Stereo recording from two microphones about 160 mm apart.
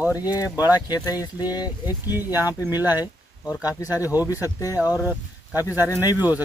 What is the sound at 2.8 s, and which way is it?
Speech, 10° right (ahead or behind).